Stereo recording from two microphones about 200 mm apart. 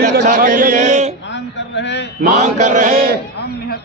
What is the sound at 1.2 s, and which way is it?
Speech, 65° left (ahead or behind).